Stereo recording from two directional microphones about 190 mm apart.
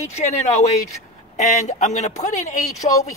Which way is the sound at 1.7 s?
40° left (ahead or behind).